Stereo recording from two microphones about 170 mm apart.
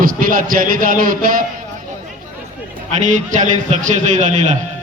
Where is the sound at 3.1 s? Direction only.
45° right (ahead or behind).